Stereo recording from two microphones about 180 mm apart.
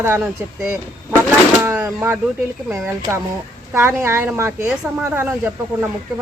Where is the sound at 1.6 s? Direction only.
15° right (ahead or behind).